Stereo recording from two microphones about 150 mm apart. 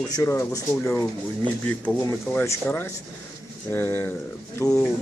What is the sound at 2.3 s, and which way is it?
Speech, 15° left (ahead or behind).